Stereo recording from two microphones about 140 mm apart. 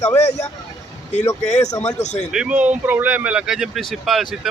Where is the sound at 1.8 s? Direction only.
55° left (ahead or behind).